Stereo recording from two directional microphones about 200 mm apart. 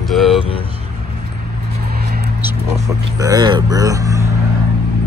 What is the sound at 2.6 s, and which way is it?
Speech, 15° right (ahead or behind).